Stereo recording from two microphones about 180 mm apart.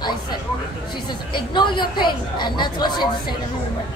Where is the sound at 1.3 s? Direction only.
25° left (ahead or behind).